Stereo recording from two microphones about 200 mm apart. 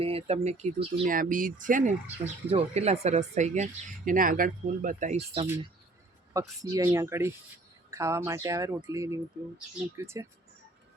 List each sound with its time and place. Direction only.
0.0 s speech: 30° right (ahead or behind)
1.0 s speech: 45° right (ahead or behind)
6.3 s speech: 15° right (ahead or behind)